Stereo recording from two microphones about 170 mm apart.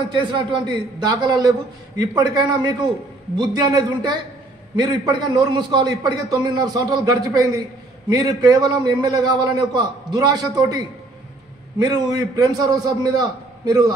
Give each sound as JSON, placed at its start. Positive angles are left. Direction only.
{"t": 0.1, "sound": "a man's voice", "side_deg": -25}